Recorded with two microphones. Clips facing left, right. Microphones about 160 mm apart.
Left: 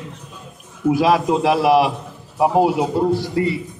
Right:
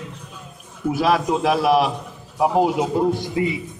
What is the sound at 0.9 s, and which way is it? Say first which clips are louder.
Speech: left 3 dB; 10° left (ahead or behind).